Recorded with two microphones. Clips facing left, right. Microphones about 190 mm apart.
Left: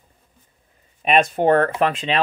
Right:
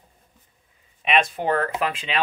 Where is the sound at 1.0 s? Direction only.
45° left (ahead or behind).